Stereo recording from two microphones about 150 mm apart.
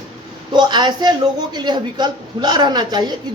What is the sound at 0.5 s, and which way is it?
Speech, 30° right (ahead or behind).